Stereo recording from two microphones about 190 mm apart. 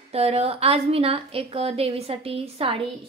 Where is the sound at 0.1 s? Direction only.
30° right (ahead or behind).